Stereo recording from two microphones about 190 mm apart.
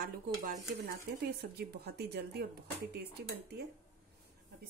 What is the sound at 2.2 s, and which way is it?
Speech, 60° right (ahead or behind).